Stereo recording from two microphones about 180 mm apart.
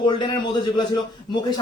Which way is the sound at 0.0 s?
25° left (ahead or behind).